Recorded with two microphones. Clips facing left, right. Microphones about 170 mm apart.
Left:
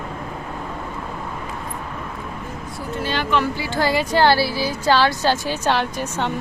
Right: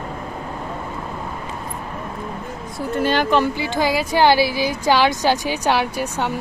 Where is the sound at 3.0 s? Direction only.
45° right (ahead or behind).